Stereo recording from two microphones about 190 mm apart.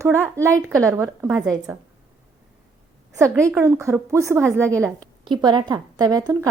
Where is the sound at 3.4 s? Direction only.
15° right (ahead or behind).